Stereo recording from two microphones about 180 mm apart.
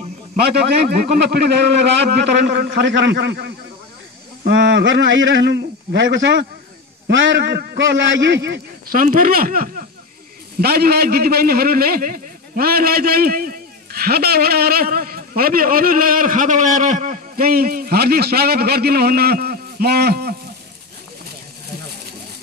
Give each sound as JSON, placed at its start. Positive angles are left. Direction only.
{"t": 0.6, "sound": "a man's voice", "side_deg": -65}
{"t": 4.5, "sound": "a man's voice", "side_deg": -90}
{"t": 8.8, "sound": "a man's voice", "side_deg": -50}